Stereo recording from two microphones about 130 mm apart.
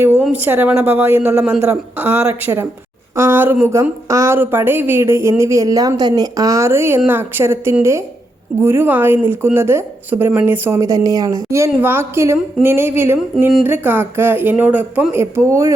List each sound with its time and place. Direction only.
0.2 s a woman's voice: 10° right (ahead or behind)